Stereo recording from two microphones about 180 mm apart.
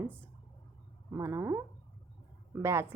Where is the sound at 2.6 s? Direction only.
15° right (ahead or behind).